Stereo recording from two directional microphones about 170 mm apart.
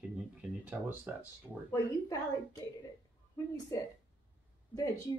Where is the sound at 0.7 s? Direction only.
10° right (ahead or behind).